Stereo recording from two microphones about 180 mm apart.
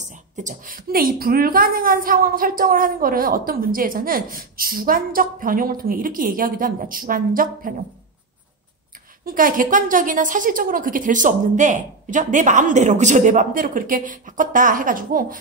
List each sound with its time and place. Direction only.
0.1 s a woman's voice: 45° right (ahead or behind)
9.2 s a woman's voice: 50° right (ahead or behind)